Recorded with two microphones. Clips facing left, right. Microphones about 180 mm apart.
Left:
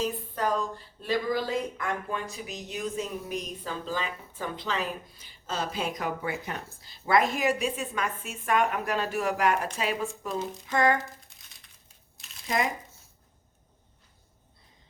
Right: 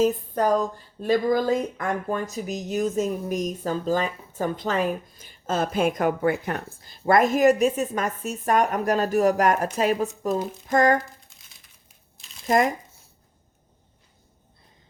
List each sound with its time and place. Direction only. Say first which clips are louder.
0.0 s speech: right 8 dB; 45° right (ahead or behind)
12.5 s speech: right 8 dB; 50° right (ahead or behind)